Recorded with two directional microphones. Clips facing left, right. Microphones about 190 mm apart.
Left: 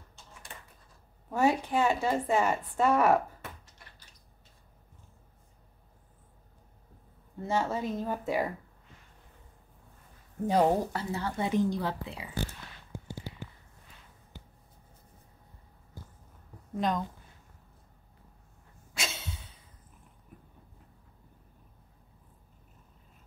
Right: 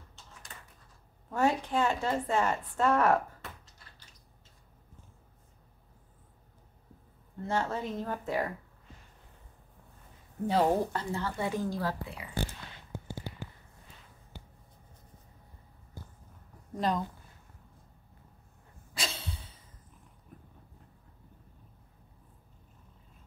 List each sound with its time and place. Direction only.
1.3 s a woman's voice: 10° left (ahead or behind)
7.4 s a woman's voice: 10° left (ahead or behind)
10.5 s a woman's voice: 10° left (ahead or behind)
16.7 s a woman's voice: centre (ahead or behind)
18.9 s a sound: centre (ahead or behind)